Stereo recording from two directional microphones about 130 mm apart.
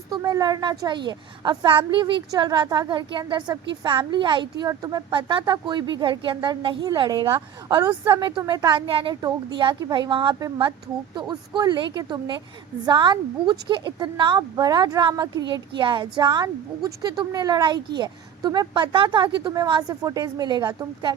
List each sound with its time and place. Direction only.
0.1 s a woman's voice: 30° right (ahead or behind)